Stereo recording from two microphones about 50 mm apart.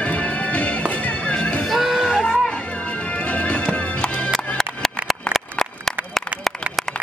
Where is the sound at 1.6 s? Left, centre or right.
Centre.